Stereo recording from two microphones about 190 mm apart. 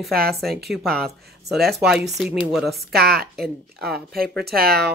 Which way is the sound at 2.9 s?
55° right (ahead or behind).